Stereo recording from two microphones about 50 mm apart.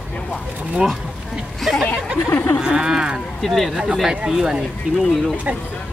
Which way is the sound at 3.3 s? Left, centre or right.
Centre.